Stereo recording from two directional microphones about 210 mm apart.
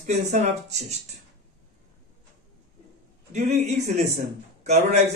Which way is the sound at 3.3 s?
35° right (ahead or behind).